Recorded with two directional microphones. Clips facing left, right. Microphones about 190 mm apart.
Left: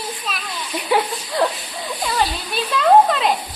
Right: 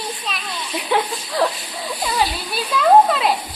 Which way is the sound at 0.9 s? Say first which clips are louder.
Left 1 dB; 5° left (ahead or behind).